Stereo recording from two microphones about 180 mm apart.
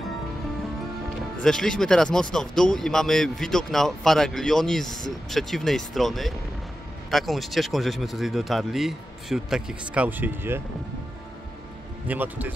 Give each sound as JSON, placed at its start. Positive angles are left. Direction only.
{"t": 1.4, "sound": "speech", "side_deg": 5}
{"t": 12.1, "sound": "speech", "side_deg": -10}